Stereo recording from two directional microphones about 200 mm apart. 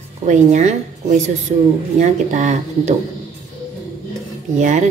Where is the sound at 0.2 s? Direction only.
35° right (ahead or behind).